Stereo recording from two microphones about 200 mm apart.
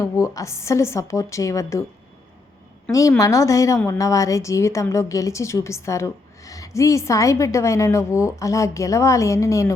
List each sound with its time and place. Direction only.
0.0 s a woman's voice: 15° left (ahead or behind)
2.9 s a woman's voice: 15° left (ahead or behind)